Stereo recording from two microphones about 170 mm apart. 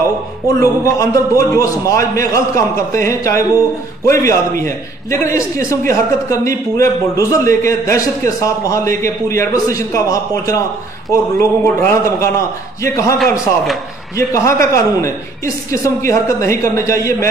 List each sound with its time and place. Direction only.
0.6 s a man's voice: 20° left (ahead or behind)
14.1 s a man's voice: 20° left (ahead or behind)